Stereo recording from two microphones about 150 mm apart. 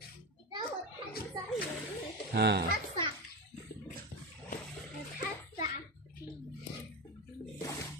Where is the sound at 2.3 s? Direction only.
90° right.